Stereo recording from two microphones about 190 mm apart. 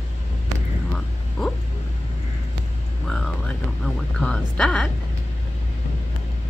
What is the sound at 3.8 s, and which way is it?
Speech, 5° left (ahead or behind).